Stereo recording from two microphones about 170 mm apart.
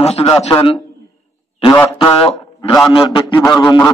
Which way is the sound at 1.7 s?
20° left (ahead or behind).